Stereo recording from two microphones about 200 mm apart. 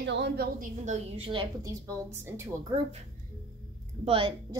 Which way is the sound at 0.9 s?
30° right (ahead or behind).